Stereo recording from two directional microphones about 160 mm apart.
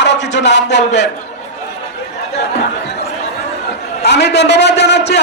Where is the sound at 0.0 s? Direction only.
90° left.